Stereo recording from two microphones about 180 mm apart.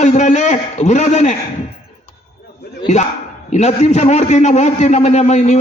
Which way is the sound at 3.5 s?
40° left (ahead or behind).